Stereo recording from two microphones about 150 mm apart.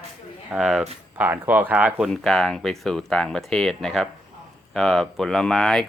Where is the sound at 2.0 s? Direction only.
5° left (ahead or behind).